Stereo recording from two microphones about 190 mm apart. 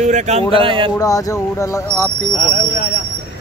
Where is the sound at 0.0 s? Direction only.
40° right (ahead or behind).